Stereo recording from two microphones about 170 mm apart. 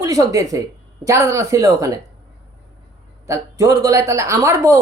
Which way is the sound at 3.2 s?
15° right (ahead or behind).